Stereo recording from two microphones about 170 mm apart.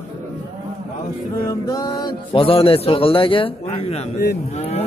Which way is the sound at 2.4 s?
35° left (ahead or behind).